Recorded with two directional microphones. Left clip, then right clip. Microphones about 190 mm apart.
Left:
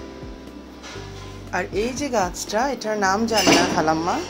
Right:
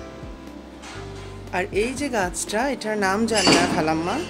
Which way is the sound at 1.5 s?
10° right (ahead or behind).